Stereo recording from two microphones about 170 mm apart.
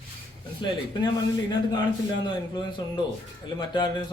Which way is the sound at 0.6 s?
25° left (ahead or behind).